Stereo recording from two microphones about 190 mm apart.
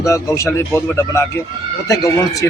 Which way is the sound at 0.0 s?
15° left (ahead or behind).